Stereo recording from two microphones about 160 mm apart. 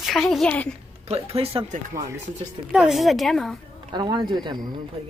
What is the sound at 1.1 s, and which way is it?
Speech, 40° right (ahead or behind).